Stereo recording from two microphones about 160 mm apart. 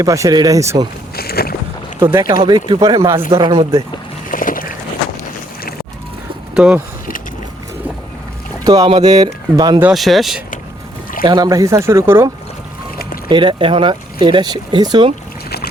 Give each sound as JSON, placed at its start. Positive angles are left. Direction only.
{"t": 0.0, "sound": "speech", "side_deg": -20}
{"t": 1.1, "sound": "a sound", "side_deg": 75}
{"t": 2.2, "sound": "speech", "side_deg": -30}
{"t": 4.3, "sound": "vehicle", "side_deg": 60}
{"t": 6.5, "sound": "speech", "side_deg": -5}
{"t": 8.6, "sound": "speech", "side_deg": -20}
{"t": 9.8, "sound": "speech", "side_deg": 0}
{"t": 11.2, "sound": "speech", "side_deg": -25}
{"t": 13.2, "sound": "speech", "side_deg": -30}
{"t": 15.4, "sound": "boat", "side_deg": 80}